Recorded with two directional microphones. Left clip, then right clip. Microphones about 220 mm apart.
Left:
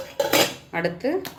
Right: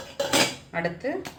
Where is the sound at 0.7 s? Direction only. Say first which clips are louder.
Left 4 dB; 35° left (ahead or behind).